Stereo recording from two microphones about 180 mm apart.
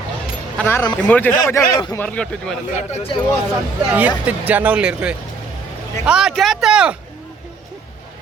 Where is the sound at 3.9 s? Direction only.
10° right (ahead or behind).